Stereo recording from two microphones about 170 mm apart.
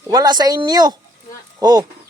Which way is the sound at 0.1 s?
25° right (ahead or behind).